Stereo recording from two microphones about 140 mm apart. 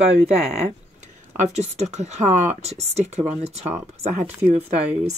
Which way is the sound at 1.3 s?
50° right (ahead or behind).